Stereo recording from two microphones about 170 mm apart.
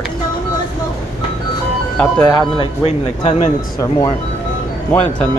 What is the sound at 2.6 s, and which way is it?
Speech, 35° left (ahead or behind).